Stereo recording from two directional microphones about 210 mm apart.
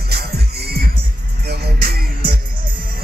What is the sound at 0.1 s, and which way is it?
Music, 50° right (ahead or behind).